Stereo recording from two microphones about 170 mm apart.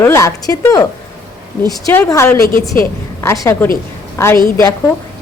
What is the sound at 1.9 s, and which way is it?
A woman's voice, 15° left (ahead or behind).